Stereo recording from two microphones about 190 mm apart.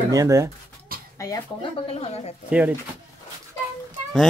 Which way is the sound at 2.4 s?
5° right (ahead or behind).